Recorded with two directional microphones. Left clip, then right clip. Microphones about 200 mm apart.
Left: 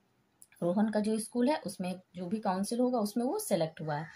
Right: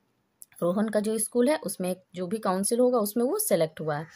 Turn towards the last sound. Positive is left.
turn(degrees=-50)  # may be behind; listen again after turning